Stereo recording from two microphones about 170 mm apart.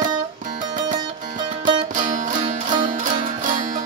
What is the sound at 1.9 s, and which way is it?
Music, 50° right (ahead or behind).